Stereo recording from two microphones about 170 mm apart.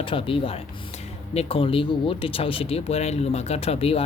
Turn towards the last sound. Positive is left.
turn(degrees=35)  # may be behind; listen again after turning